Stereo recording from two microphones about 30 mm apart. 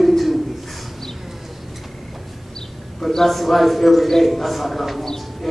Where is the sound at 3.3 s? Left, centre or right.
Centre.